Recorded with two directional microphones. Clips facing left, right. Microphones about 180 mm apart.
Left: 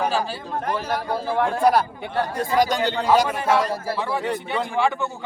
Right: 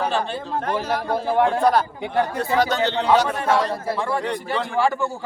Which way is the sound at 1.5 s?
10° left (ahead or behind).